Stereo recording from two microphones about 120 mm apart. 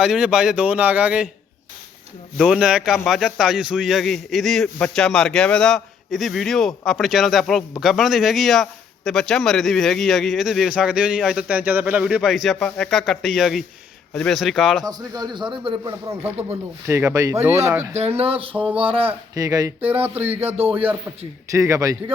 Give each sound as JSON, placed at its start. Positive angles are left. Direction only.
{"t": 0.0, "sound": "a man's voice", "side_deg": -5}
{"t": 2.4, "sound": "a man's voice", "side_deg": -5}
{"t": 14.8, "sound": "speech", "side_deg": -35}
{"t": 15.6, "sound": "a sound", "side_deg": -40}
{"t": 16.2, "sound": "speech", "side_deg": -15}
{"t": 18.2, "sound": "a sound", "side_deg": -50}
{"t": 18.5, "sound": "a man's voice", "side_deg": -10}
{"t": 18.8, "sound": "a sound", "side_deg": -50}
{"t": 19.3, "sound": "speech", "side_deg": -30}
{"t": 19.9, "sound": "a man's voice", "side_deg": -15}
{"t": 20.6, "sound": "a sound", "side_deg": -55}
{"t": 21.5, "sound": "speech", "side_deg": -25}